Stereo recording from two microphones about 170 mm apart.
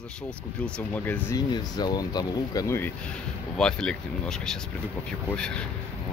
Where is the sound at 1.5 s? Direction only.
25° left (ahead or behind).